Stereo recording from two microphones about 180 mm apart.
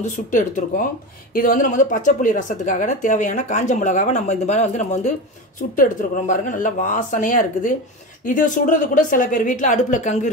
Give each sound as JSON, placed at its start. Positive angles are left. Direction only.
{"t": 0.0, "sound": "a woman's voice", "side_deg": 45}